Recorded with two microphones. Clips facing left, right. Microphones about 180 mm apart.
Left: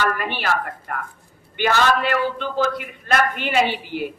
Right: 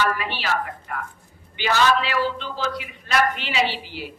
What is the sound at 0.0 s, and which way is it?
A man's voice, 50° left (ahead or behind).